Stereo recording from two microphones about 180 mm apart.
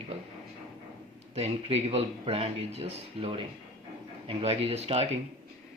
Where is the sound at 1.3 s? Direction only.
35° right (ahead or behind).